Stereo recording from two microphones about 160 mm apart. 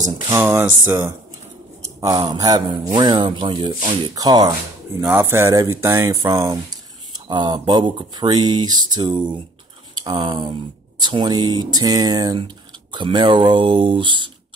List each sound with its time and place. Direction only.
0.3 s speech: 15° right (ahead or behind); by 14.3 s 30° right (ahead or behind)